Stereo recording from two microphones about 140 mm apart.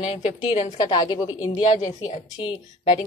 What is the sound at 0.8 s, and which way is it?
A woman's voice, 30° left (ahead or behind).